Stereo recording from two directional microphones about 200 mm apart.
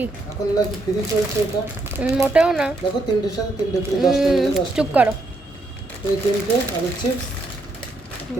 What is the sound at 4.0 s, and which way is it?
Speech, centre (ahead or behind).